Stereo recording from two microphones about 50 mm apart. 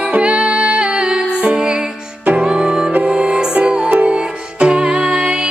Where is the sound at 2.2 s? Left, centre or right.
Right.